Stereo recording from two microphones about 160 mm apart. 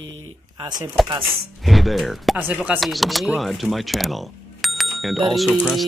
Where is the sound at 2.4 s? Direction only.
10° right (ahead or behind).